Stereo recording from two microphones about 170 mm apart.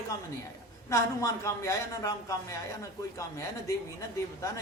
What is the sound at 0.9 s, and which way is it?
A woman's voice, 20° left (ahead or behind).